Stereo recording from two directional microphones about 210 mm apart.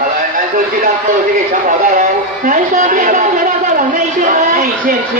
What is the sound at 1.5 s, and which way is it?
A man's voice, 40° right (ahead or behind).